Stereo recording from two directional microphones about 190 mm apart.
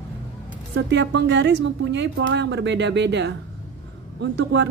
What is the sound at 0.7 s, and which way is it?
Speech, 65° right (ahead or behind).